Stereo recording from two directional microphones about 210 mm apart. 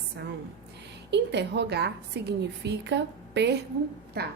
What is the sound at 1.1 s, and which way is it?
A woman's voice, 55° right (ahead or behind).